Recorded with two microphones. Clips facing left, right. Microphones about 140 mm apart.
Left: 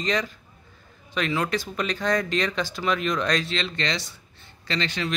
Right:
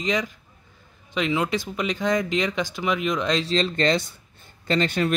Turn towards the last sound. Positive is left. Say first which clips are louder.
# right 6 dB
turn(degrees=-50)  # may be behind; listen again after turning